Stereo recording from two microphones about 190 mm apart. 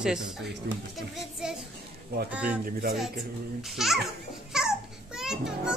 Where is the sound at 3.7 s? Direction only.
Centre (ahead or behind).